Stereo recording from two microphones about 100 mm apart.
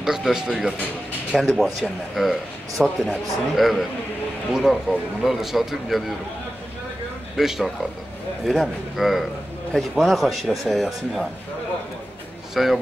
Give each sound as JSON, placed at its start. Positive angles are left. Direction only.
{"t": 0.0, "sound": "speech", "side_deg": -5}
{"t": 7.3, "sound": "speech", "side_deg": 0}
{"t": 12.6, "sound": "speech", "side_deg": 0}